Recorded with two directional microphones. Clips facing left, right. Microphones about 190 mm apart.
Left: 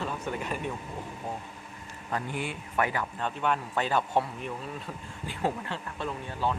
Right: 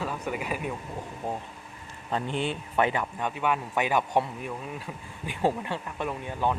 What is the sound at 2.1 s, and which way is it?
A man's voice, 25° right (ahead or behind).